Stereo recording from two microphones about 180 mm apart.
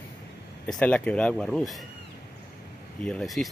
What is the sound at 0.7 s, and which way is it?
Speech, 5° left (ahead or behind).